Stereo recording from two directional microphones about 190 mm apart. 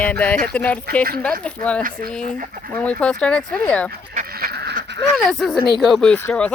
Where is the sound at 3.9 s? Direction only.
50° right (ahead or behind).